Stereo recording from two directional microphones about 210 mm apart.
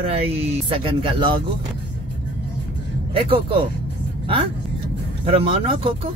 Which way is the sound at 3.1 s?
25° right (ahead or behind).